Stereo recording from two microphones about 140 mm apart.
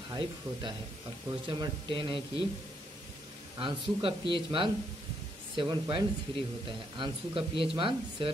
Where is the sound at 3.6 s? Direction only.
40° right (ahead or behind).